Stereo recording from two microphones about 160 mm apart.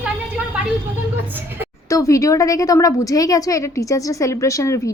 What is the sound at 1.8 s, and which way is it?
A woman's voice, 20° left (ahead or behind).